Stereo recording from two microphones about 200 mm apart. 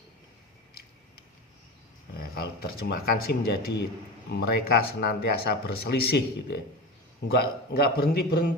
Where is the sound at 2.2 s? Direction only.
50° left (ahead or behind).